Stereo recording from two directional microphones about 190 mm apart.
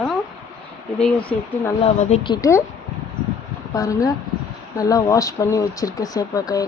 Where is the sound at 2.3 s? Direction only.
15° left (ahead or behind).